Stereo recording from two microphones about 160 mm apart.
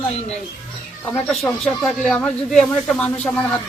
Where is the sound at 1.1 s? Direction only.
Centre (ahead or behind).